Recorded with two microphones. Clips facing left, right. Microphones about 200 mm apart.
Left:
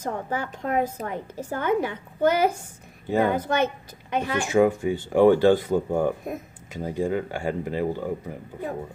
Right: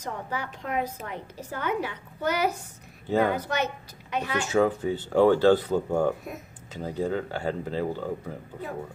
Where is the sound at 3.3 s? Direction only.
50° left (ahead or behind).